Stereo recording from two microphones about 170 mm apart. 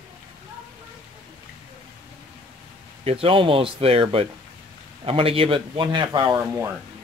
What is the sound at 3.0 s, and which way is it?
Speech, 35° right (ahead or behind).